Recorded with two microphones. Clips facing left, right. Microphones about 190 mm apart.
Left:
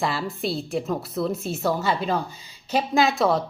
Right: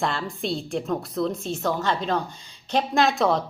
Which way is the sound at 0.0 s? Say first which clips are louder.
Left 1 dB; 5° left (ahead or behind).